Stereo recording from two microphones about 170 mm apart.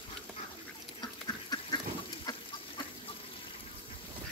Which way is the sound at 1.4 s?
25° left (ahead or behind).